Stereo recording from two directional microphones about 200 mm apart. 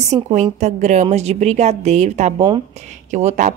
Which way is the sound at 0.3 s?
35° right (ahead or behind).